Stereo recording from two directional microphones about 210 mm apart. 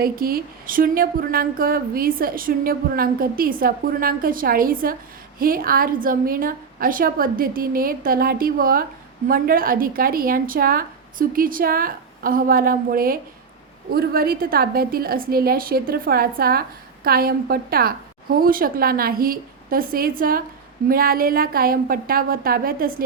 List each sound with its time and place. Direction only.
0.0 s a woman's voice: 45° right (ahead or behind)